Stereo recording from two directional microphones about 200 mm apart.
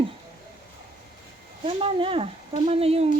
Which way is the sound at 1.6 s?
25° right (ahead or behind).